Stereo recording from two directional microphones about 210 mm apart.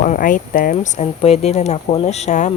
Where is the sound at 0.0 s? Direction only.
40° left (ahead or behind).